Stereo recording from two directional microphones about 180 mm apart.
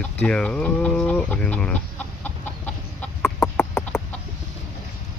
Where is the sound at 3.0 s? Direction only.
10° left (ahead or behind).